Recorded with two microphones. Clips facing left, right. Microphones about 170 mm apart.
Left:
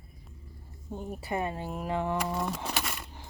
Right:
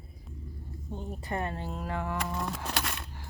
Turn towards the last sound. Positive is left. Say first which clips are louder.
# even
turn(degrees=5)  # may be behind; listen again after turning